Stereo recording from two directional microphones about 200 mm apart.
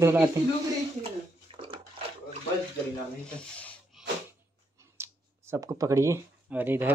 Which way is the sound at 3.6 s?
5° left (ahead or behind).